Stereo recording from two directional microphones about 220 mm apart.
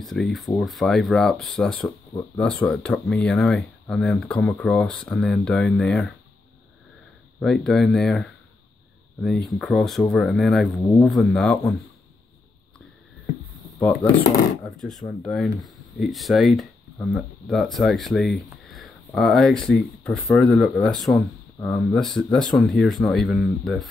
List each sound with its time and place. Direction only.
0.0 s speech: centre (ahead or behind)
7.3 s speech: 5° left (ahead or behind)
14.1 s speech: 5° left (ahead or behind)